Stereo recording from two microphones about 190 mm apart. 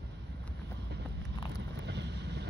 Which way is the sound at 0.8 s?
65° right (ahead or behind).